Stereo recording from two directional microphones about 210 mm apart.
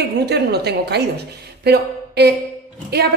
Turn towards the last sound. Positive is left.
turn(degrees=-50)  # may be behind; listen again after turning